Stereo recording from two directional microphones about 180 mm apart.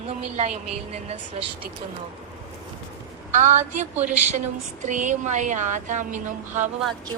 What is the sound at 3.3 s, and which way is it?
Speech, 45° right (ahead or behind).